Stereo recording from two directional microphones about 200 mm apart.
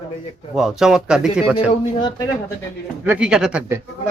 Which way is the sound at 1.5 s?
20° left (ahead or behind).